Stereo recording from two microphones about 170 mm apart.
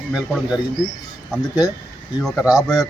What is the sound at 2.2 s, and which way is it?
Speech, 5° left (ahead or behind).